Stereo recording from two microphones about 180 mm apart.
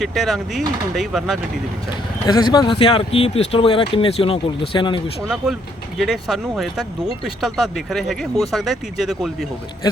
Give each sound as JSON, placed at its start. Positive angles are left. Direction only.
{"t": 0.0, "sound": "speech", "side_deg": 0}
{"t": 2.2, "sound": "speech", "side_deg": 20}
{"t": 6.0, "sound": "speech", "side_deg": 0}